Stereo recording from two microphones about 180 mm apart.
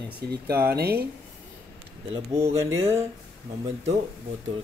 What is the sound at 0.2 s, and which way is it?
Speech, 60° right (ahead or behind).